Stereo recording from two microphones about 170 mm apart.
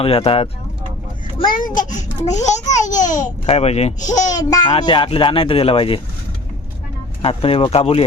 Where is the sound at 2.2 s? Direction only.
45° left (ahead or behind).